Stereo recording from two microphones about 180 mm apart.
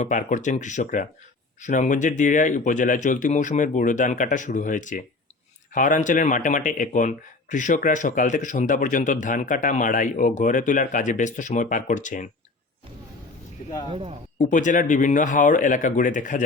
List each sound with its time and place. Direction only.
0.0 s speech: 45° left (ahead or behind)
13.9 s a man's voice: 30° right (ahead or behind)
14.3 s speech: 45° left (ahead or behind)